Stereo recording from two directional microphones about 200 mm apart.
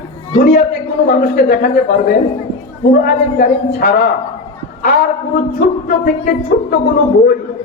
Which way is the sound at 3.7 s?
55° left (ahead or behind).